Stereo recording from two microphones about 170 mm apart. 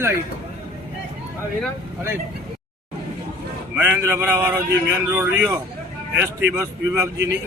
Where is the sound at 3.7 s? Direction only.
15° right (ahead or behind).